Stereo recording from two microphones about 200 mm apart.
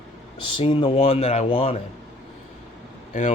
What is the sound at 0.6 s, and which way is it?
Speech, 25° left (ahead or behind).